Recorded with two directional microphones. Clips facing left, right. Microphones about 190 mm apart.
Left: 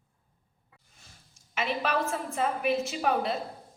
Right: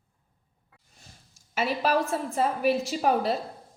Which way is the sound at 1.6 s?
40° right (ahead or behind).